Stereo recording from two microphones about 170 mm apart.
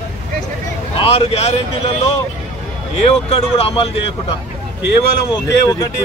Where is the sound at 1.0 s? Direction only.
35° left (ahead or behind).